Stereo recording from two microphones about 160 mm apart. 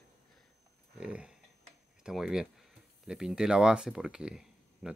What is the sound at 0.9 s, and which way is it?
Speech, 5° right (ahead or behind).